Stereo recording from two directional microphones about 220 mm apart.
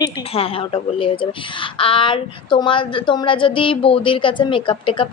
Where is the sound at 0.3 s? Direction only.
25° left (ahead or behind).